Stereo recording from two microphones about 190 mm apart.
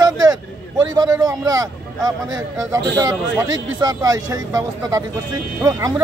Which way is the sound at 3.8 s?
20° right (ahead or behind).